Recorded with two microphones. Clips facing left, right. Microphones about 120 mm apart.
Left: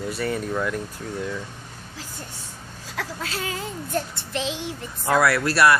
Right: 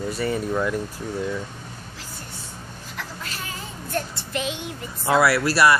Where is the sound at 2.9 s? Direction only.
90° left.